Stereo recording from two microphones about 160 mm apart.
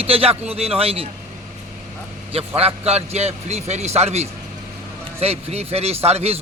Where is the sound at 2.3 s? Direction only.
40° right (ahead or behind).